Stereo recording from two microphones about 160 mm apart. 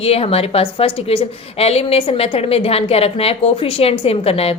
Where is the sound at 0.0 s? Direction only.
35° left (ahead or behind).